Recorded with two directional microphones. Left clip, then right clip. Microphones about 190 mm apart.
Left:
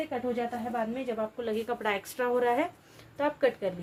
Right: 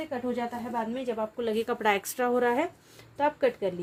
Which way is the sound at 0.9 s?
60° right (ahead or behind).